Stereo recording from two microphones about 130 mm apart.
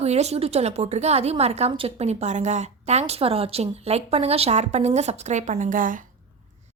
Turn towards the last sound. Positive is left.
turn(degrees=-90)